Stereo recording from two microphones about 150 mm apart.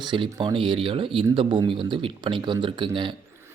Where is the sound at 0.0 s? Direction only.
30° right (ahead or behind).